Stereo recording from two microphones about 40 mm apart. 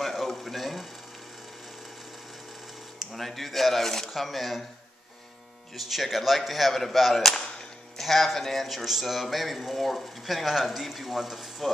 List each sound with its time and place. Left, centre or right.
0.0 s a sound: centre
3.0 s speech: centre
5.8 s speech: centre
7.2 s speech: centre
8.0 s speech: centre